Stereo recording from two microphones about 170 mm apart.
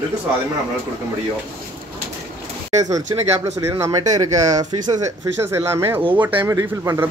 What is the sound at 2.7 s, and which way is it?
Speech, 20° right (ahead or behind).